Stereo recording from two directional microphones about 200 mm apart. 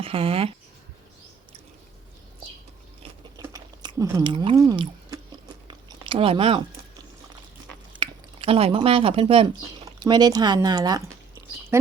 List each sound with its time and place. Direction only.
0.0 s speech: 30° right (ahead or behind)
3.3 s chewing: 15° right (ahead or behind)
4.3 s speech: 20° right (ahead or behind)
5.6 s a sound: 25° right (ahead or behind)
7.9 s speech: 25° right (ahead or behind)